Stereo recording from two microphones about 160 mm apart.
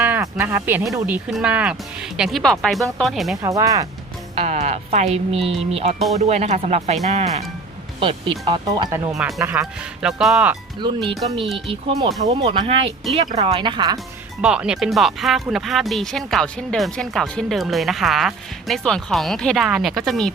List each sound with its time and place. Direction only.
0.0 s a sound: 15° right (ahead or behind)
1.0 s speech: 5° right (ahead or behind)
3.4 s speech: 20° right (ahead or behind)
4.4 s speech: 45° right (ahead or behind)
7.9 s speech: 30° right (ahead or behind)
9.4 s speech: 10° right (ahead or behind)
11.5 s speech: 35° right (ahead or behind)
14.4 s speech: 5° right (ahead or behind)